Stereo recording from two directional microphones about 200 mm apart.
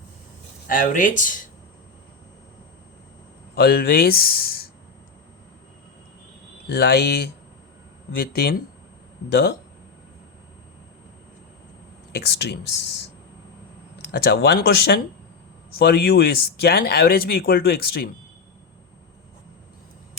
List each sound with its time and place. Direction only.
0.7 s speech: 45° left (ahead or behind)
3.5 s speech: 50° left (ahead or behind)
6.7 s speech: 55° left (ahead or behind)
12.1 s speech: 55° left (ahead or behind)
14.1 s speech: 55° left (ahead or behind)